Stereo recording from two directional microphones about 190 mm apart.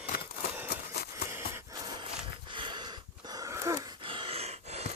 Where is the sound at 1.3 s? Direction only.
15° right (ahead or behind).